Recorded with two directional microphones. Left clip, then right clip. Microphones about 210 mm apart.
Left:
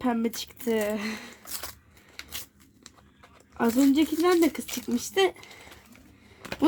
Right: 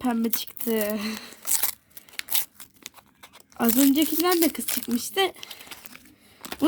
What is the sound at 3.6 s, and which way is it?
A woman's voice, 15° right (ahead or behind).